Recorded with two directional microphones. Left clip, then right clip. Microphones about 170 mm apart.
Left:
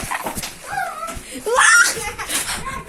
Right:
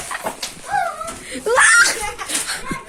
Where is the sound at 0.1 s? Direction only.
5° left (ahead or behind).